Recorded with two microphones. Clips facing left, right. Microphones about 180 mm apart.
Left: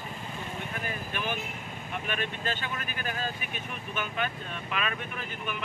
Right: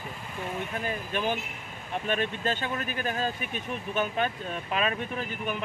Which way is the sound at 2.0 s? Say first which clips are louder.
Right 5 dB; 40° right (ahead or behind).